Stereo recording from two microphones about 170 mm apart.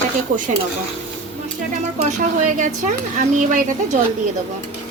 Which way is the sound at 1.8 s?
45° right (ahead or behind).